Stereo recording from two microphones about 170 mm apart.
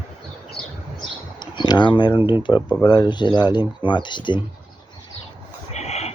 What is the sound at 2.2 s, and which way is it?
Speech, 10° right (ahead or behind).